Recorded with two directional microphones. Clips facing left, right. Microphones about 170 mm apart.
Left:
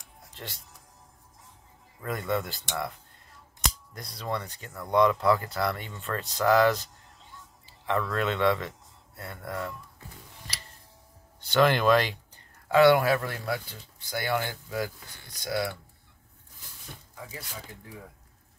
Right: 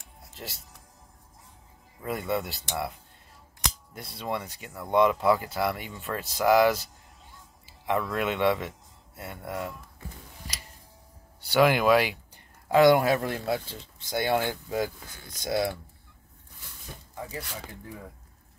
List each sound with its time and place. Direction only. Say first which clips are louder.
0.3 s music: right 1 dB; 5° right (ahead or behind)
2.0 s speech: even; 5° right (ahead or behind)
4.3 s speech: even; 15° right (ahead or behind)
11.4 s speech: right 1 dB; 10° right (ahead or behind)